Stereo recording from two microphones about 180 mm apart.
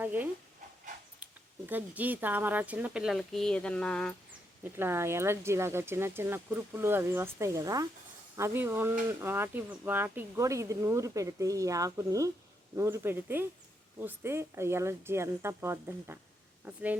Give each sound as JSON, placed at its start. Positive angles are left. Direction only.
{"t": 0.0, "sound": "speech", "side_deg": -10}
{"t": 4.8, "sound": "speech", "side_deg": -15}